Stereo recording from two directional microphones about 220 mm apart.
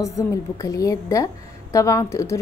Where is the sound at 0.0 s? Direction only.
15° left (ahead or behind).